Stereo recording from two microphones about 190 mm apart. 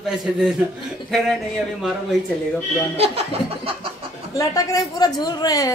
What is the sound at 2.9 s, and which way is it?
Speech, 35° right (ahead or behind).